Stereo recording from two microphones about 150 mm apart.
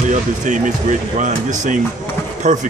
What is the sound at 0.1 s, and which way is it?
Speech, 55° right (ahead or behind).